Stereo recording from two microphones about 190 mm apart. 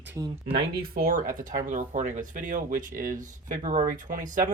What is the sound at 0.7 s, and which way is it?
Speech, 50° right (ahead or behind).